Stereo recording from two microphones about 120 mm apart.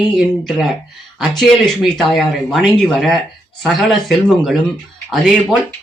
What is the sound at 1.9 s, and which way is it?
Speech, centre (ahead or behind).